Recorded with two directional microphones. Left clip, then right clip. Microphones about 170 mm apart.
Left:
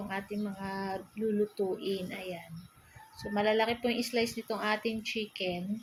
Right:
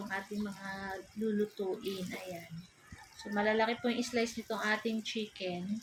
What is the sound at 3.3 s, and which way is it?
Speech, 40° left (ahead or behind).